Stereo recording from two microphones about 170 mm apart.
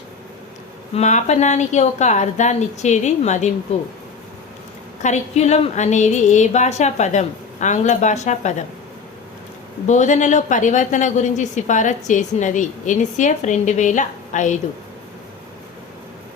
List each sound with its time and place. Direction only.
0.9 s a woman's voice: 45° left (ahead or behind)
5.0 s a woman's voice: 40° left (ahead or behind)
9.8 s a woman's voice: 45° left (ahead or behind)